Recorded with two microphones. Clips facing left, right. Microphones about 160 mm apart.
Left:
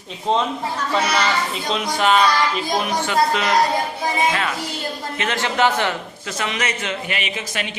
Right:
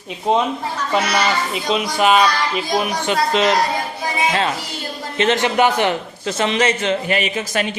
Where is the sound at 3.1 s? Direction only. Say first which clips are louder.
Right 2 dB; 20° right (ahead or behind).